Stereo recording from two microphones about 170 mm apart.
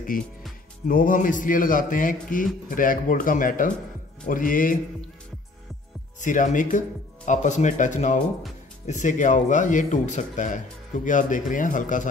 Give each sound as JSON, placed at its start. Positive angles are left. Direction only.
{"t": 0.1, "sound": "speech", "side_deg": 55}
{"t": 6.1, "sound": "speech", "side_deg": 45}